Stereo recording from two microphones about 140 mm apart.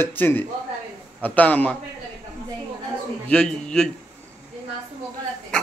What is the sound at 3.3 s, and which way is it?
Speech, 5° left (ahead or behind).